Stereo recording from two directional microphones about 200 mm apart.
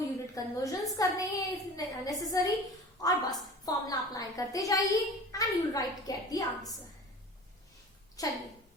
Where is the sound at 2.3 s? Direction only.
15° left (ahead or behind).